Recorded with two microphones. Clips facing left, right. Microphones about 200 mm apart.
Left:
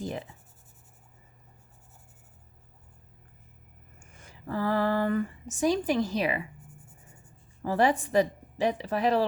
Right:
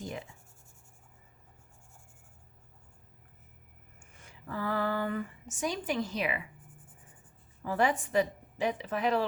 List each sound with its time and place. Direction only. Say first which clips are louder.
0.0 s speech: left 5 dB; 35° left (ahead or behind)
4.0 s speech: left 6 dB; 40° left (ahead or behind)
7.6 s a woman's voice: left 4 dB; 35° left (ahead or behind)